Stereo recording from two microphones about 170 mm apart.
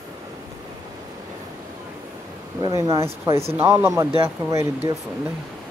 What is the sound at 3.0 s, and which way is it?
Speech, 15° right (ahead or behind).